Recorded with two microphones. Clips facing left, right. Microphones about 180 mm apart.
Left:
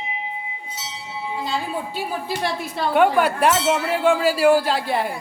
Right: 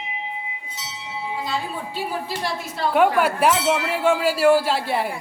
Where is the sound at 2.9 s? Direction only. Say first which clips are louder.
Left 1 dB; 5° right (ahead or behind).